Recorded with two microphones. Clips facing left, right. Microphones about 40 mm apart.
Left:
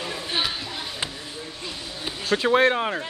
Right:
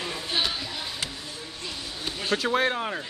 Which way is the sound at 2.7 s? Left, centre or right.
Left.